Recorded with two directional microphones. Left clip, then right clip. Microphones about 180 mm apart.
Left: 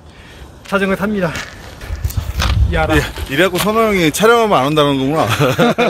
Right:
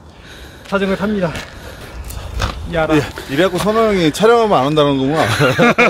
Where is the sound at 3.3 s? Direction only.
10° right (ahead or behind).